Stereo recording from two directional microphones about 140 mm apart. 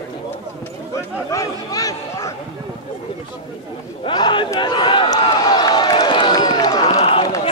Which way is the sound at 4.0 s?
35° left (ahead or behind).